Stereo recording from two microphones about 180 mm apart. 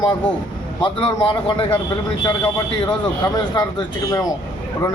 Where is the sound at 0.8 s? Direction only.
25° left (ahead or behind).